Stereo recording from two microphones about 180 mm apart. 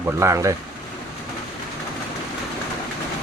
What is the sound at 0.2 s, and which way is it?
Speech, 15° right (ahead or behind).